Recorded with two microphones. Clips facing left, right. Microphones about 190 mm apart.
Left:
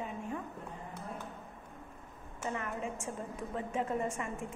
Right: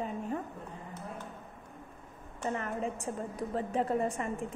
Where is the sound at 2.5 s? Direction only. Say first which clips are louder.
Right 3 dB; 35° right (ahead or behind).